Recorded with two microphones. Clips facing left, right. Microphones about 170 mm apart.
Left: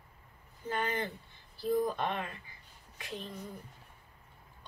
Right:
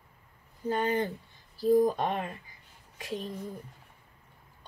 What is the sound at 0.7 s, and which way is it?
Speech, 35° right (ahead or behind).